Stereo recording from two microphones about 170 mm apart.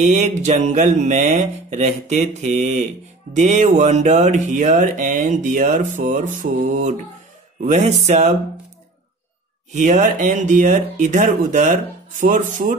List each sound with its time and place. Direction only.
0.0 s music: 45° right (ahead or behind)
9.8 s music: 50° right (ahead or behind)